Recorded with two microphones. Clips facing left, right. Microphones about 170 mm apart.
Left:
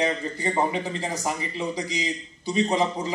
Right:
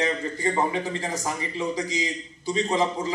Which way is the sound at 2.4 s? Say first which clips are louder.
Left 1 dB; 20° left (ahead or behind).